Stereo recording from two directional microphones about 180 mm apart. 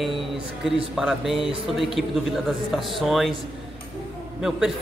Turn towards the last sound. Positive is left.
turn(degrees=0)  # may be behind; listen again after turning